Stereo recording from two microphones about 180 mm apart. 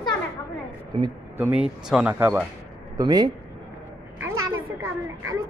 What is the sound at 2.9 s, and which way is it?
Speech, 20° right (ahead or behind).